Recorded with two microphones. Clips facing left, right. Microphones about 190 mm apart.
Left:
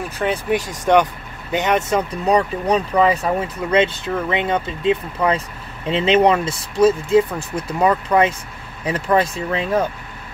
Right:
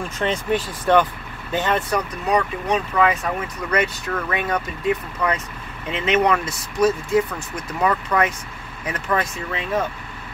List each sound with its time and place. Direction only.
0.2 s speech: 10° left (ahead or behind); by 9.7 s 30° left (ahead or behind)